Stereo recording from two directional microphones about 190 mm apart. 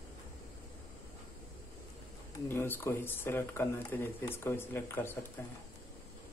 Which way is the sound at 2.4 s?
10° left (ahead or behind).